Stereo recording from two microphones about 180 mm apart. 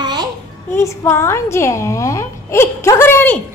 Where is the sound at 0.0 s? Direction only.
25° right (ahead or behind).